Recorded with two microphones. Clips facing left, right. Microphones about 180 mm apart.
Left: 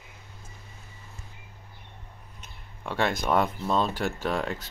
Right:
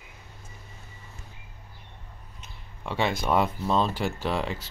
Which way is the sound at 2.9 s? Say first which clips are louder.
Even; 5° right (ahead or behind).